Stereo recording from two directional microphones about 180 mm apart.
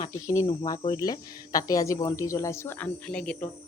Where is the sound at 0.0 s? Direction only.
20° left (ahead or behind).